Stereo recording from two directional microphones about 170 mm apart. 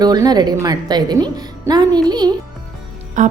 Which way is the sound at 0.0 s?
25° right (ahead or behind).